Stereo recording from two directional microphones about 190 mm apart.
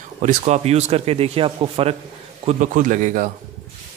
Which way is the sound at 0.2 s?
40° right (ahead or behind).